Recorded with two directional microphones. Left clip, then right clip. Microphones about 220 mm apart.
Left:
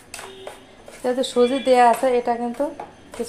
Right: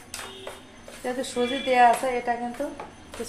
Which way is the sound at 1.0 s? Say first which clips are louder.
Left 8 dB; 35° left (ahead or behind).